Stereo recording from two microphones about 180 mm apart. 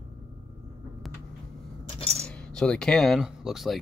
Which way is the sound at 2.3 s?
5° left (ahead or behind).